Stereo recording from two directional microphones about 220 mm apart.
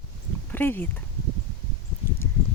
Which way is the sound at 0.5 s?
10° left (ahead or behind).